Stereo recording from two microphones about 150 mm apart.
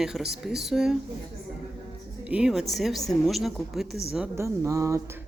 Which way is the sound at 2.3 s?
5° right (ahead or behind).